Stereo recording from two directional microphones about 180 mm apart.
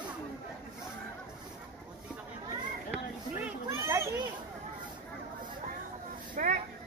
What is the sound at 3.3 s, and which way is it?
Children playing, 10° right (ahead or behind).